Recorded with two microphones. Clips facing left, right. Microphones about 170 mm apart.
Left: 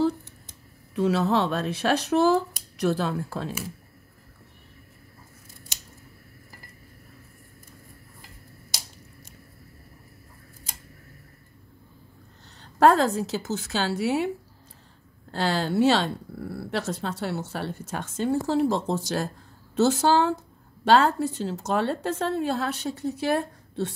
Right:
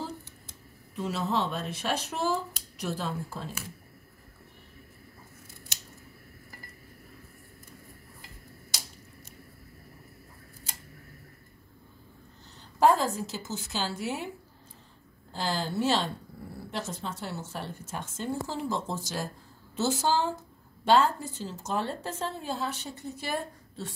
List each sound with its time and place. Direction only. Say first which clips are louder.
0.9 s speech: left 7 dB; 70° left (ahead or behind)
12.7 s speech: left 5 dB; 75° left (ahead or behind)
15.3 s speech: left 7 dB; 75° left (ahead or behind)